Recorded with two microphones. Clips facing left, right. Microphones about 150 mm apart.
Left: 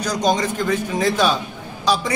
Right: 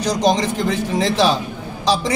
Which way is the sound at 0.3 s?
25° right (ahead or behind).